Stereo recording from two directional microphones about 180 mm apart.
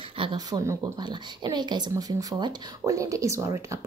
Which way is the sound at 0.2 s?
25° right (ahead or behind).